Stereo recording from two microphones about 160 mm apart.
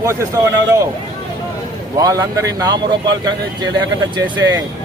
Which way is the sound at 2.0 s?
20° right (ahead or behind).